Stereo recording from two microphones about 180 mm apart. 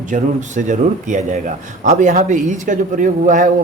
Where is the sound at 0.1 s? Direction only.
45° right (ahead or behind).